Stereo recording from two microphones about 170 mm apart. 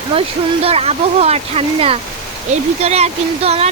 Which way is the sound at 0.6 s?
35° right (ahead or behind).